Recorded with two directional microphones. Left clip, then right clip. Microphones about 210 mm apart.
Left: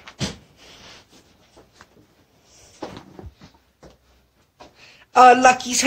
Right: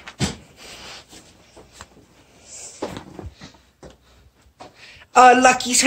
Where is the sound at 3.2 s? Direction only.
20° right (ahead or behind).